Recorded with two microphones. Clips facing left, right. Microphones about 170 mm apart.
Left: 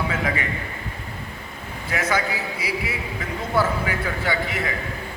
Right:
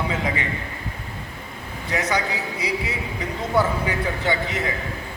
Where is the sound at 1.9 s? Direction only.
20° right (ahead or behind).